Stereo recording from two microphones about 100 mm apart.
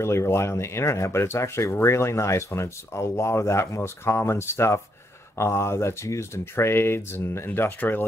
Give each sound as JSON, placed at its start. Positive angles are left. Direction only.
{"t": 0.0, "sound": "speech", "side_deg": 25}